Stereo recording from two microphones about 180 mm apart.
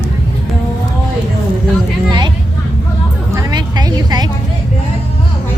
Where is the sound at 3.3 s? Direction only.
25° right (ahead or behind).